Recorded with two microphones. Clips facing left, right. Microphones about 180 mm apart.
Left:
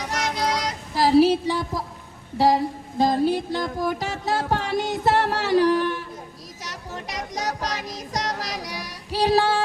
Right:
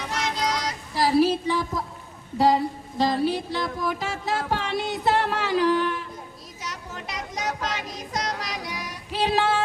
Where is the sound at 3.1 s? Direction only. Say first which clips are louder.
Left 3 dB; 45° left (ahead or behind).